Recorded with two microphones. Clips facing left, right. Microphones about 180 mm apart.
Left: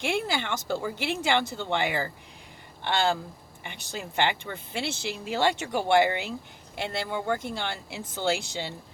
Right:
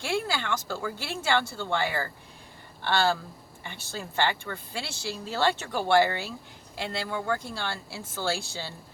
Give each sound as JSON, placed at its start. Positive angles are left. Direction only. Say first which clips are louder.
{"t": 0.0, "sound": "speech", "louder": "left 1 dB", "side_deg": 20}